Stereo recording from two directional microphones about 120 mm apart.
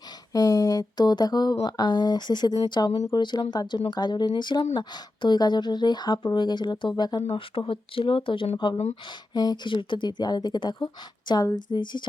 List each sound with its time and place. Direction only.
0.3 s speech: 30° left (ahead or behind); by 8.4 s 45° left (ahead or behind)
9.0 s speech: 35° left (ahead or behind)